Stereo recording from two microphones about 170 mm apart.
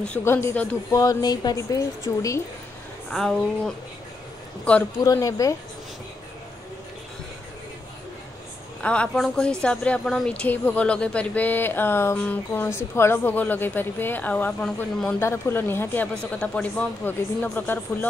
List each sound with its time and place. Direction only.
0.0 s a woman's voice: 10° left (ahead or behind)
3.1 s speech: centre (ahead or behind)
5.0 s speech: 20° left (ahead or behind)
8.8 s a woman's voice: 5° left (ahead or behind)